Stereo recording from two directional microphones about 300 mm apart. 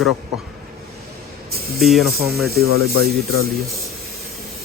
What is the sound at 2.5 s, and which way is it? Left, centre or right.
Speech, right.